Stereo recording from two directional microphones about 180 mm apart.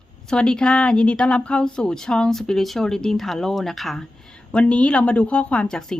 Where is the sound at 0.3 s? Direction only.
5° left (ahead or behind).